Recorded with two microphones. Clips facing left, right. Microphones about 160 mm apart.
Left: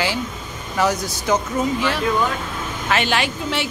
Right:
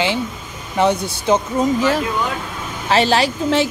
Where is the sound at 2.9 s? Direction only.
35° right (ahead or behind).